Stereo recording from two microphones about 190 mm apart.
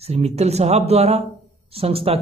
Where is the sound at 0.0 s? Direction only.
35° right (ahead or behind).